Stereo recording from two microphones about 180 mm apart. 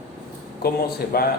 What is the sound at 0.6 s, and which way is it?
Speech, 60° left (ahead or behind).